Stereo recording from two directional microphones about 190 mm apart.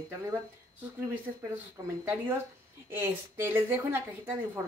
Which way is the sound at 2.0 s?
10° right (ahead or behind).